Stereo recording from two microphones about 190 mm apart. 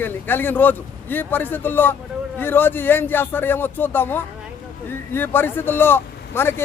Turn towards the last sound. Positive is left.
turn(degrees=10)  # may be behind; listen again after turning